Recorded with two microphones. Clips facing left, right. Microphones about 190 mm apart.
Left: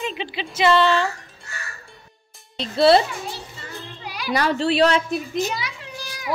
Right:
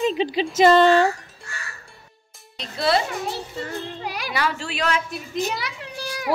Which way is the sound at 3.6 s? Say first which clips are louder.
Right 6 dB; 55° right (ahead or behind).